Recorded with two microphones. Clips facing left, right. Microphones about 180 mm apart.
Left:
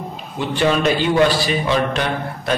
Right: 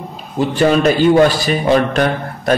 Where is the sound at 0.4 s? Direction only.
45° right (ahead or behind).